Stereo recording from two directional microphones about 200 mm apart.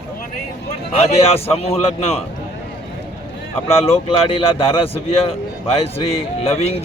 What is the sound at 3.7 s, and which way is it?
A man's voice, 30° left (ahead or behind).